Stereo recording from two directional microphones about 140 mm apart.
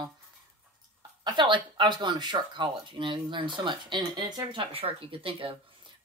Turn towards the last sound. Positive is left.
turn(degrees=-40)  # may be behind; listen again after turning